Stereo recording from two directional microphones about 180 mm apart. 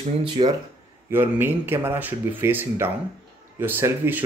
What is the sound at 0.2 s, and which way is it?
Speech, 25° right (ahead or behind).